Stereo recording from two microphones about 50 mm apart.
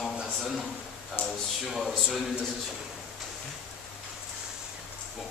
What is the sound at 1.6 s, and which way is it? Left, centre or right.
Speech, centre.